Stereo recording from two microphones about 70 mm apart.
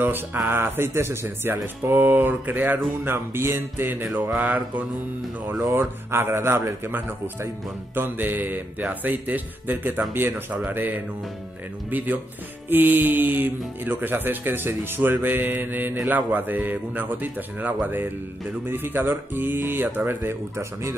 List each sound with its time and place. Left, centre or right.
0.0 s speech: right